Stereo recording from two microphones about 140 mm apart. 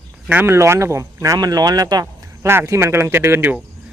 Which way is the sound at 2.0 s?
15° right (ahead or behind).